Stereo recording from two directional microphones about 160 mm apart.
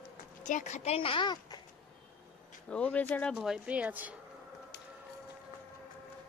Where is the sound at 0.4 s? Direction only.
50° left (ahead or behind); by 1.6 s 25° left (ahead or behind).